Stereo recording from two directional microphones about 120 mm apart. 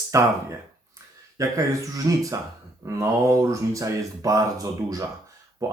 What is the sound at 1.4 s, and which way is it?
Speech, 25° right (ahead or behind).